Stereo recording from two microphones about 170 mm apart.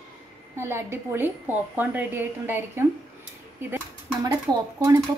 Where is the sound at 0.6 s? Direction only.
15° right (ahead or behind).